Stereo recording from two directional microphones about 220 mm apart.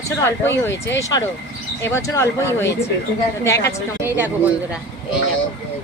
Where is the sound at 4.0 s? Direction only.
10° right (ahead or behind).